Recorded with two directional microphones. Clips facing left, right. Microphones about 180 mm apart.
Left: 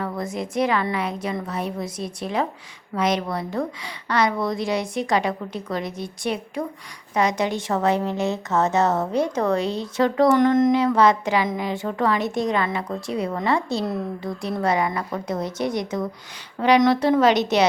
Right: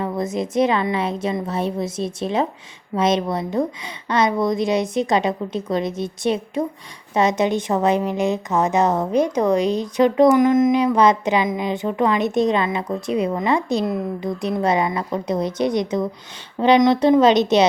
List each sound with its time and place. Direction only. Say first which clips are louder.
0.0 s a woman's voice: right 4 dB; 20° right (ahead or behind)